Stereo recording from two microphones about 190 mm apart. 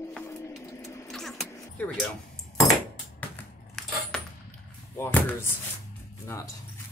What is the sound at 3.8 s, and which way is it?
Keys jangling, centre (ahead or behind).